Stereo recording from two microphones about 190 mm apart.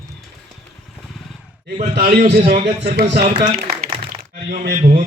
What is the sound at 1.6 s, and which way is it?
Speech, 50° right (ahead or behind).